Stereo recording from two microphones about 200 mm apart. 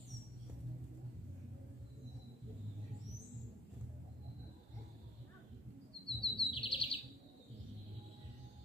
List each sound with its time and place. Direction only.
6.0 s chirp: 25° left (ahead or behind)